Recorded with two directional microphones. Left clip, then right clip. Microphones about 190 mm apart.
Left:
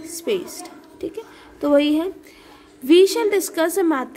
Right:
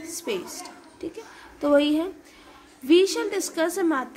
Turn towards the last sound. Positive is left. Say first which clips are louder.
# left 4 dB
turn(degrees=30)  # may be behind; listen again after turning